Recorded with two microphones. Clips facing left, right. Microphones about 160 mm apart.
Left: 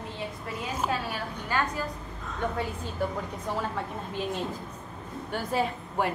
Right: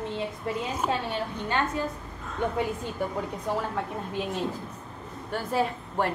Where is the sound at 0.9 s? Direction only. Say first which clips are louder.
Right 2 dB; 25° right (ahead or behind).